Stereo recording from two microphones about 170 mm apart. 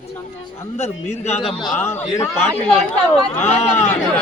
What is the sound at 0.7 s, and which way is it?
Speech, 40° left (ahead or behind).